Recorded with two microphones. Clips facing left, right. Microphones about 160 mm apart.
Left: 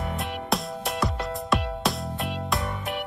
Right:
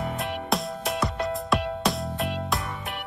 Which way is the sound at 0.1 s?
Centre (ahead or behind).